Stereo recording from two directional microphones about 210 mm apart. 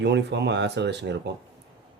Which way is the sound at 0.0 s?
55° right (ahead or behind).